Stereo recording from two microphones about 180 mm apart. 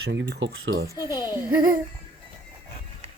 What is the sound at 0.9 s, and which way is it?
Speech, 20° left (ahead or behind).